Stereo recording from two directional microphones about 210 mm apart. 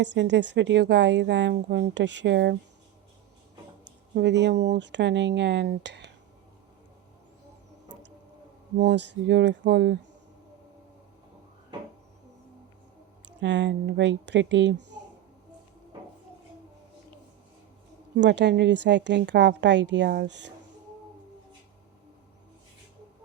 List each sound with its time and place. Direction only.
0.0 s speech: 55° right (ahead or behind)
4.1 s speech: 55° right (ahead or behind)
8.8 s speech: 55° right (ahead or behind)
13.2 s speech: 60° right (ahead or behind)
18.2 s speech: 55° right (ahead or behind)